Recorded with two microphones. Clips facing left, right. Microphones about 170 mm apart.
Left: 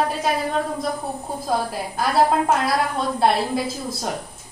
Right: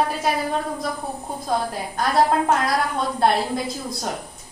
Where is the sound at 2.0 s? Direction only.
5° left (ahead or behind).